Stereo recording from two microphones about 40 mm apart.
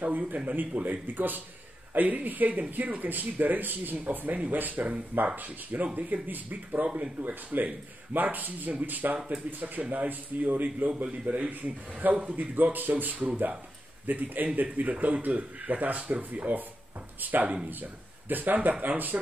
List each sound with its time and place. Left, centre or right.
0.0 s a man's voice: right
12.4 s a man's voice: right